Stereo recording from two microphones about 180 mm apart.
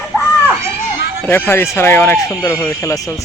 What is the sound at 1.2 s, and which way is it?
Speech, 10° left (ahead or behind).